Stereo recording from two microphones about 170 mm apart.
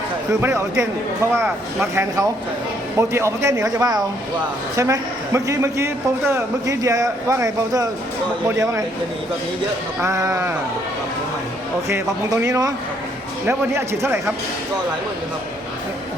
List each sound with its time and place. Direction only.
0.3 s a man's voice: 20° right (ahead or behind)
10.0 s a man's voice: 15° right (ahead or behind)
11.9 s a man's voice: 15° right (ahead or behind)